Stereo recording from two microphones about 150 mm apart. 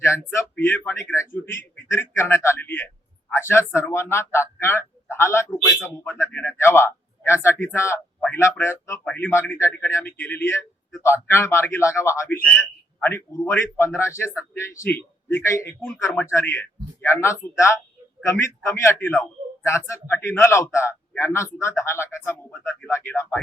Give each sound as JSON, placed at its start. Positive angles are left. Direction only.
{"t": 0.0, "sound": "a man's voice", "side_deg": 15}